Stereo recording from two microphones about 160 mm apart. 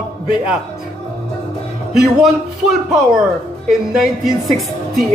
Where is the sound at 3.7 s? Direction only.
Centre (ahead or behind).